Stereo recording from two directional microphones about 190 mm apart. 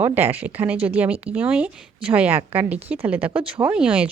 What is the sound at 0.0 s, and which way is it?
Speech, 10° right (ahead or behind).